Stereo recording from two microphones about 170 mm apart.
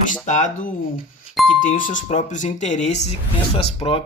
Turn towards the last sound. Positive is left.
turn(degrees=35)  # may be behind; listen again after turning